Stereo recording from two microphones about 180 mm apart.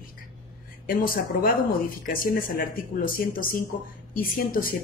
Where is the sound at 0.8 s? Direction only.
50° left (ahead or behind).